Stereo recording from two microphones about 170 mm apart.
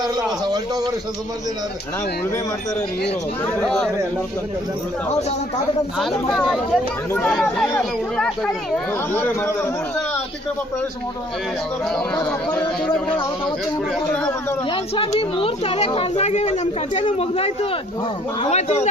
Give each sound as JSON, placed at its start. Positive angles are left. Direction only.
{"t": 0.0, "sound": "a man's voice", "side_deg": -25}
{"t": 3.6, "sound": "speech", "side_deg": 5}
{"t": 6.0, "sound": "speech", "side_deg": 0}
{"t": 7.1, "sound": "speech", "side_deg": 10}
{"t": 12.1, "sound": "speech", "side_deg": 20}
{"t": 14.7, "sound": "speech", "side_deg": 30}